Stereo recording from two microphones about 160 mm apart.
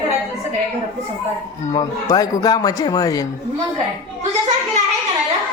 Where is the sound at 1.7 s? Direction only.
25° left (ahead or behind).